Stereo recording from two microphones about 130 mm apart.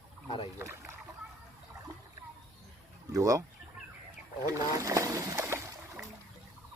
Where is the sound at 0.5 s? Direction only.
20° right (ahead or behind).